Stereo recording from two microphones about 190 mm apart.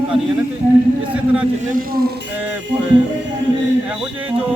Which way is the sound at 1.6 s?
45° right (ahead or behind).